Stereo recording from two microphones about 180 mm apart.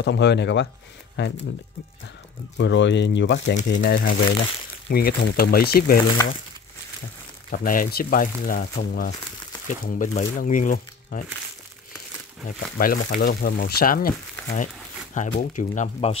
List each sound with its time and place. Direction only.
0.0 s speech: 75° left (ahead or behind)
2.5 s speech: 85° left
3.8 s speech: 55° left (ahead or behind)
7.5 s speech: 50° left (ahead or behind)
12.7 s speech: 50° left (ahead or behind)